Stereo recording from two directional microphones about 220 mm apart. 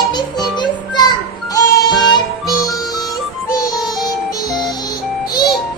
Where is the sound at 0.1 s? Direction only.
20° left (ahead or behind).